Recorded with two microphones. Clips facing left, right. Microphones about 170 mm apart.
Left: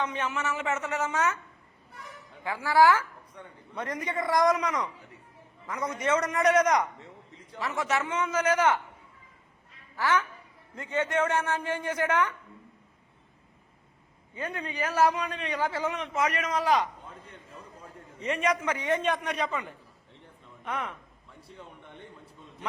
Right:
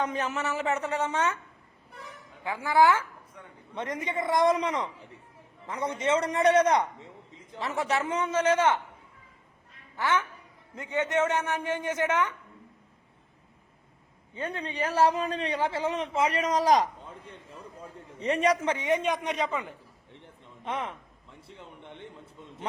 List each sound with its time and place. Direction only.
0.0 s a man's voice: 40° right (ahead or behind)
2.4 s a man's voice: 20° right (ahead or behind)
3.4 s a man's voice: 5° right (ahead or behind)
3.8 s a man's voice: 25° right (ahead or behind)
7.0 s a sound: 15° right (ahead or behind)
7.6 s a man's voice: 30° right (ahead or behind)
9.9 s a man's voice: 25° right (ahead or behind)
14.3 s a man's voice: 30° right (ahead or behind)
18.2 s a man's voice: 35° right (ahead or behind)
18.8 s speech: 15° right (ahead or behind)